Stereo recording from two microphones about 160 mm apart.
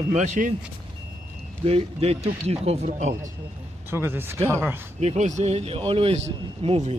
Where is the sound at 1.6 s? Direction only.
40° right (ahead or behind).